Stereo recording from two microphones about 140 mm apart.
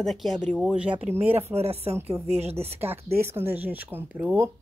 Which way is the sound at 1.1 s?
15° right (ahead or behind).